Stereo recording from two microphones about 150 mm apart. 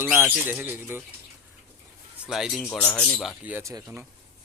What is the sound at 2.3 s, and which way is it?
Speech, centre (ahead or behind).